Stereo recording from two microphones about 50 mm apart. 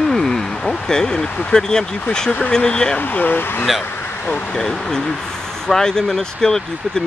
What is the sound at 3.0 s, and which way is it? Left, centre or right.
Speech, left.